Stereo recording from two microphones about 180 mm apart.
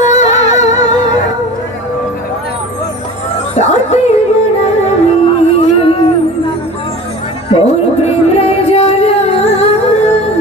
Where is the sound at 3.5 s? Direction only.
40° left (ahead or behind).